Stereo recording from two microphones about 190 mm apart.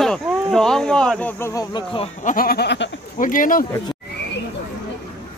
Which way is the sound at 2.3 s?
50° left (ahead or behind).